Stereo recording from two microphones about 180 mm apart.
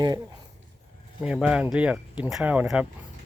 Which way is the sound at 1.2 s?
5° right (ahead or behind).